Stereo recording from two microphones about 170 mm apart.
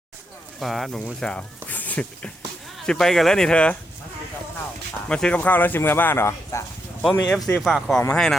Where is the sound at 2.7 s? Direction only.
5° left (ahead or behind).